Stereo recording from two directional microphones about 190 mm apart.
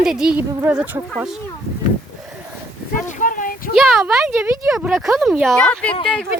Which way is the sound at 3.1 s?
45° left (ahead or behind).